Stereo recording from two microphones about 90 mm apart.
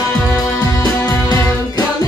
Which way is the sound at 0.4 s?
40° left (ahead or behind).